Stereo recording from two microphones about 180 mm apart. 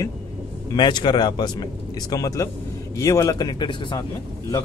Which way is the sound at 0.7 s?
25° left (ahead or behind).